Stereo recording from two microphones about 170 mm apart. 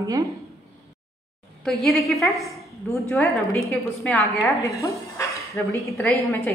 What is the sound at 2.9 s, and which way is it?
A woman's voice, 10° left (ahead or behind).